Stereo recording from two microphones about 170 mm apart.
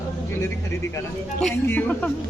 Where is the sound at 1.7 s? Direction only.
10° left (ahead or behind).